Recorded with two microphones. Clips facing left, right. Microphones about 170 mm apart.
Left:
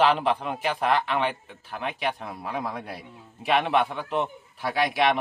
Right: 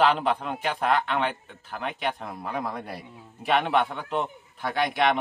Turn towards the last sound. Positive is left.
turn(degrees=0)  # may be behind; listen again after turning